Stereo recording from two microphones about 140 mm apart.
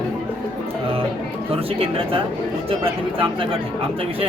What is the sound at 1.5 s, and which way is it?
Speech, 45° right (ahead or behind).